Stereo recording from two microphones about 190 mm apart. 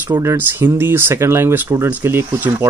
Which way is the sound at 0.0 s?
15° right (ahead or behind).